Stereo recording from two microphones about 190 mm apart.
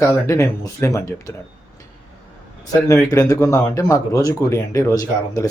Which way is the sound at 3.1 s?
15° left (ahead or behind).